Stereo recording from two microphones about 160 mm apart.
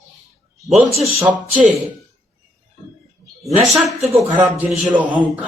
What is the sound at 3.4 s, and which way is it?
Speech, centre (ahead or behind).